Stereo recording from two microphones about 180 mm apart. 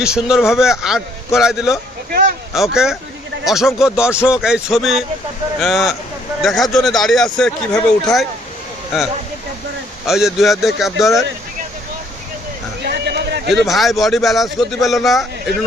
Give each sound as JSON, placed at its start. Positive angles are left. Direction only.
{"t": 0.0, "sound": "speech", "side_deg": -5}
{"t": 10.1, "sound": "speech", "side_deg": 0}
{"t": 12.8, "sound": "a sound", "side_deg": -70}
{"t": 13.7, "sound": "speech", "side_deg": 0}